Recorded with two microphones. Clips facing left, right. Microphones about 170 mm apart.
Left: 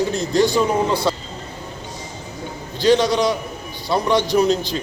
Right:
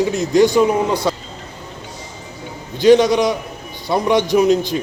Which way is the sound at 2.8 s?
20° right (ahead or behind).